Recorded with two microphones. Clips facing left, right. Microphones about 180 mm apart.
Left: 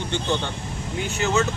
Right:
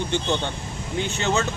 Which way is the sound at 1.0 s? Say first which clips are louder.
Left 1 dB; 30° right (ahead or behind).